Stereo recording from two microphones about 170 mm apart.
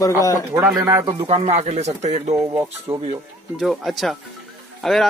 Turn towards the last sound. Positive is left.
turn(degrees=0)  # may be behind; listen again after turning